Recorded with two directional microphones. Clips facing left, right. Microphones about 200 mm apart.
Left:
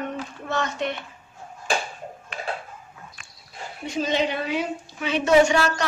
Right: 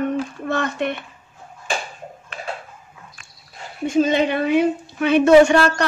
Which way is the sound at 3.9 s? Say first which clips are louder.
Right 7 dB; 50° right (ahead or behind).